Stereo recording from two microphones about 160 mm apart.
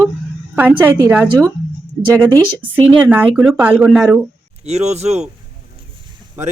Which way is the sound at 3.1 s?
10° right (ahead or behind).